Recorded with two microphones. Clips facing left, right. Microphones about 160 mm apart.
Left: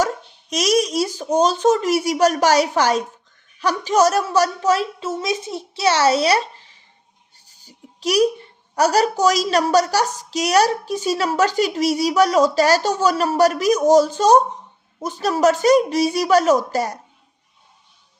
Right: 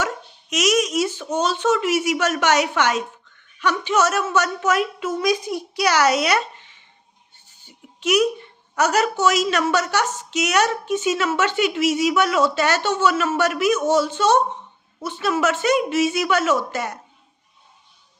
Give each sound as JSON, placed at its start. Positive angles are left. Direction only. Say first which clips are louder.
{"t": 0.5, "sound": "speech", "louder": "left 1 dB", "side_deg": 35}
{"t": 7.3, "sound": "a sound", "louder": "left 2 dB", "side_deg": 40}
{"t": 8.7, "sound": "speech", "louder": "left 3 dB", "side_deg": 35}